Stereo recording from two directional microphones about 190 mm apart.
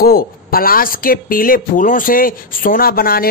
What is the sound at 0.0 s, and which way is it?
Speech, 50° left (ahead or behind).